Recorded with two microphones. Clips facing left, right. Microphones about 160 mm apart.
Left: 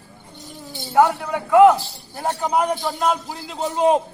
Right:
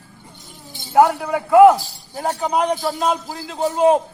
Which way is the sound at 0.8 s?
15° right (ahead or behind).